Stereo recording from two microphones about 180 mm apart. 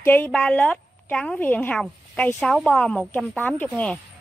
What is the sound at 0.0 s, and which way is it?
A woman's voice, 10° left (ahead or behind).